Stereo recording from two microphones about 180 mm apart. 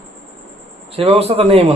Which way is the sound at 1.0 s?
35° right (ahead or behind).